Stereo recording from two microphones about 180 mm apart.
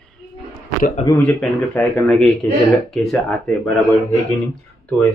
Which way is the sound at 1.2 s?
10° left (ahead or behind).